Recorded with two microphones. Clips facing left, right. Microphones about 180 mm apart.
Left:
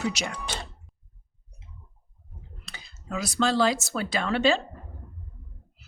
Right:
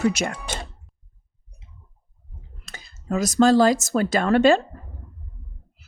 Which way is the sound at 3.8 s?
45° right (ahead or behind).